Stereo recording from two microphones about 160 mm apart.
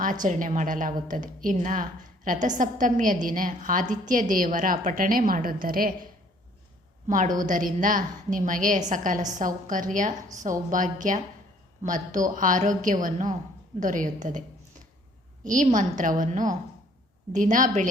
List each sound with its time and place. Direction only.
0.0 s a woman's voice: 55° right (ahead or behind)
7.1 s a woman's voice: 55° right (ahead or behind)